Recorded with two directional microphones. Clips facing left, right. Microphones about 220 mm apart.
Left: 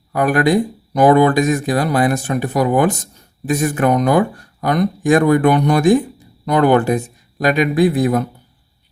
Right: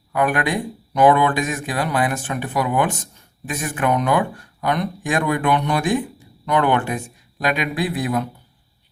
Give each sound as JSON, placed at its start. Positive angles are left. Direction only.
{"t": 0.1, "sound": "speech", "side_deg": 40}